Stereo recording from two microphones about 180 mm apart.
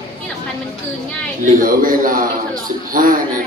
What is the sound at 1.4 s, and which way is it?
A man's voice, 50° right (ahead or behind).